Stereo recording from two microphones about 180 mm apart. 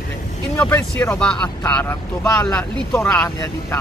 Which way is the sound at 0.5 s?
10° left (ahead or behind).